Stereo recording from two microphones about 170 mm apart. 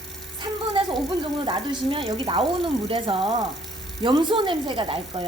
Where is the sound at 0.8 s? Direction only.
30° right (ahead or behind).